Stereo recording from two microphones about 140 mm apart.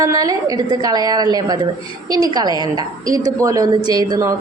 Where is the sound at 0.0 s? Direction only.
25° right (ahead or behind).